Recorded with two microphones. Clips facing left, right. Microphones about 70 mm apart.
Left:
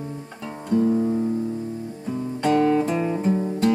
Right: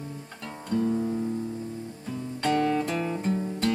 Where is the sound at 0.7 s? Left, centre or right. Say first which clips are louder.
Left 6 dB; centre.